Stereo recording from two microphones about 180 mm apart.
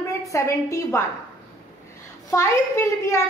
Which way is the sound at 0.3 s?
15° left (ahead or behind).